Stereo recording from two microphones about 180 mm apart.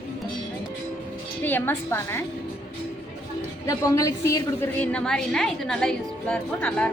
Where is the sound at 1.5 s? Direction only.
10° left (ahead or behind).